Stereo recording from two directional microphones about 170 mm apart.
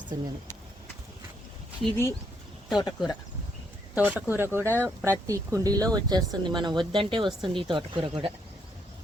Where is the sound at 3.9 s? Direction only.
10° right (ahead or behind).